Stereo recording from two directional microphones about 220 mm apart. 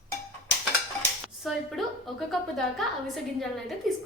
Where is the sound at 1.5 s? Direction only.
Centre (ahead or behind).